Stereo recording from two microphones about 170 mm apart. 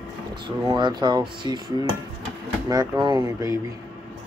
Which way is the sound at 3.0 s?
20° right (ahead or behind).